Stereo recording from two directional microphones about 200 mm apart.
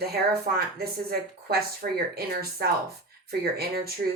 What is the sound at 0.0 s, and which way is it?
Speech, 50° right (ahead or behind).